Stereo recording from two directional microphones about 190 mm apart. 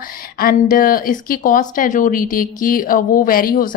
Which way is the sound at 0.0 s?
50° left (ahead or behind).